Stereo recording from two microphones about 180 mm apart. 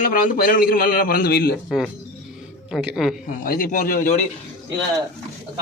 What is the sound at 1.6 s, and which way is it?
Speech, centre (ahead or behind).